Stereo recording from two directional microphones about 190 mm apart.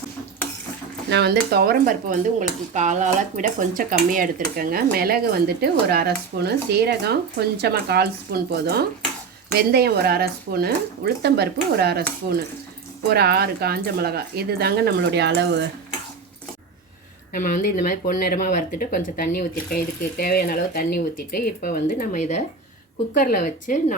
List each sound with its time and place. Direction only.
1.1 s speech: 60° right (ahead or behind)
2.7 s speech: 40° right (ahead or behind); by 15.6 s 65° right (ahead or behind)
17.3 s speech: 45° left (ahead or behind)